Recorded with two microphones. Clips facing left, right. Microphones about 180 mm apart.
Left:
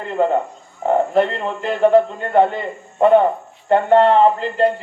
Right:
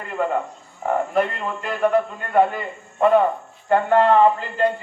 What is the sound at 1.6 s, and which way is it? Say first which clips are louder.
Speech: left 6 dB; 25° left (ahead or behind).